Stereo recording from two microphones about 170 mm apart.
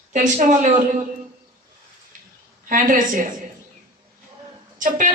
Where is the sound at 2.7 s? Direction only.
50° right (ahead or behind).